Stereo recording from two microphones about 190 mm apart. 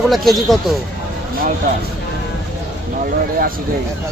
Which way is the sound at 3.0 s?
50° right (ahead or behind).